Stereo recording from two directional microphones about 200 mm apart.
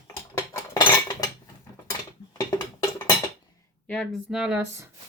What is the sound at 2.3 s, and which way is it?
Dishes, 15° left (ahead or behind).